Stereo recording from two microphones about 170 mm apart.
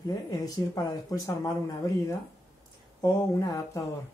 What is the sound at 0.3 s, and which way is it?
Speech, 20° left (ahead or behind).